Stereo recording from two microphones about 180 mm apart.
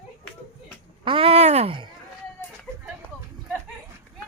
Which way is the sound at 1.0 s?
30° right (ahead or behind).